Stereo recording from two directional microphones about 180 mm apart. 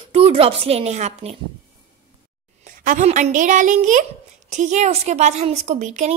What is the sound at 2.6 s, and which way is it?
Speech, 40° right (ahead or behind).